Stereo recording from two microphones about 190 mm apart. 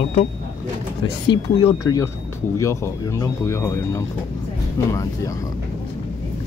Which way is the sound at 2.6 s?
15° left (ahead or behind).